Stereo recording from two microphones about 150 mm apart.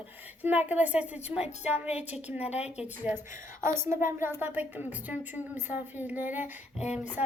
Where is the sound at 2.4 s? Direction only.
45° left (ahead or behind).